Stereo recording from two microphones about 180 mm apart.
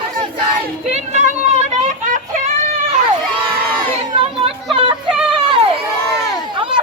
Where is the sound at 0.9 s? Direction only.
40° right (ahead or behind).